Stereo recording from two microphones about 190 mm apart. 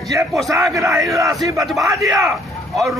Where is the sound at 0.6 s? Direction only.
15° right (ahead or behind).